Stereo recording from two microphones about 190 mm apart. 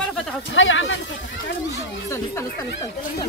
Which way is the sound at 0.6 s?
85° left.